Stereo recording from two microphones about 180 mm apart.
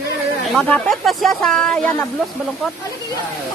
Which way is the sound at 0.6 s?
5° left (ahead or behind).